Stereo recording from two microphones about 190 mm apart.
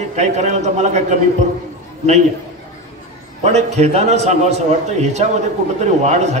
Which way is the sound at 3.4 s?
35° right (ahead or behind).